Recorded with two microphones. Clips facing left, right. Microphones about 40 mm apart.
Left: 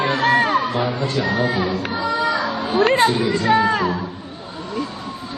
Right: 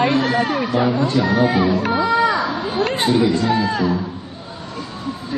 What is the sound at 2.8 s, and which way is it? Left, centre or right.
A man's voice, left.